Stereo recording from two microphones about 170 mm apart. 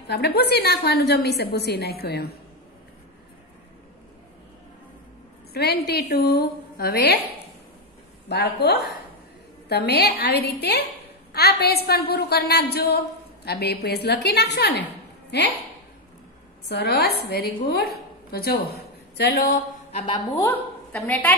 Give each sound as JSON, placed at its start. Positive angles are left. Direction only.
{"t": 0.1, "sound": "a woman's voice", "side_deg": 70}
{"t": 5.5, "sound": "a woman's voice", "side_deg": 70}
{"t": 8.3, "sound": "a woman's voice", "side_deg": 75}
{"t": 16.6, "sound": "a woman's voice", "side_deg": 70}
{"t": 19.9, "sound": "a woman's voice", "side_deg": 40}
{"t": 20.3, "sound": "a woman's voice", "side_deg": 15}